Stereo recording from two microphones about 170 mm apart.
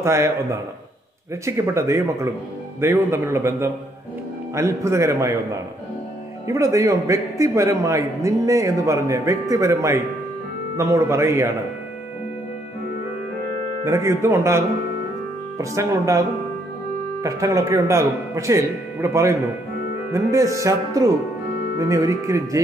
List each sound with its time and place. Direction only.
0.0 s a man's voice: 15° right (ahead or behind)
13.8 s a man's voice: 15° right (ahead or behind)
15.5 s music: 20° right (ahead or behind)
17.2 s a man's voice: 20° right (ahead or behind)
20.1 s music: 20° right (ahead or behind)